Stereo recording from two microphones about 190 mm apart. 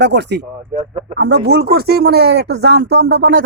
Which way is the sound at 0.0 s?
65° right (ahead or behind).